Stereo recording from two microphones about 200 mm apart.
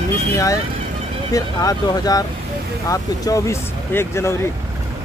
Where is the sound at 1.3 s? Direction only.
15° left (ahead or behind).